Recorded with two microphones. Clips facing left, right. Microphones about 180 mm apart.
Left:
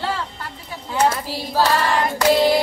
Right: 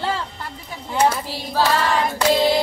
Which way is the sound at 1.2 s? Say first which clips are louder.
Left 2 dB; 10° left (ahead or behind).